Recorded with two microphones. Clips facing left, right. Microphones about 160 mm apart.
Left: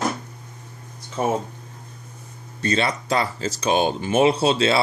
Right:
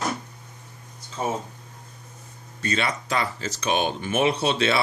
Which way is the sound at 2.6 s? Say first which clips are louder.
Left 4 dB; 35° left (ahead or behind).